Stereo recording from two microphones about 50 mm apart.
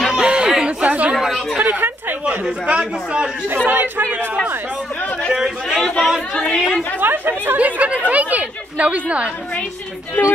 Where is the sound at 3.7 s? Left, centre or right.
Right.